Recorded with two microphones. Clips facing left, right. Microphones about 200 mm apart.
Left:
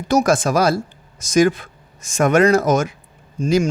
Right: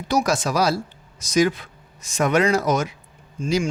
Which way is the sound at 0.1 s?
50° left (ahead or behind).